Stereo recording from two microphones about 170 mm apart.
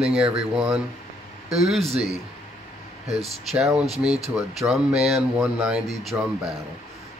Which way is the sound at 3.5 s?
5° right (ahead or behind).